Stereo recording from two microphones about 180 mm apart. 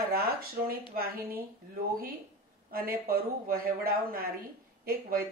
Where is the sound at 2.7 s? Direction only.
55° right (ahead or behind).